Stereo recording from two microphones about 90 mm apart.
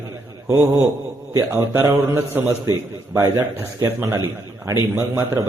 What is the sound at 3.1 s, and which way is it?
A man's voice, 30° right (ahead or behind).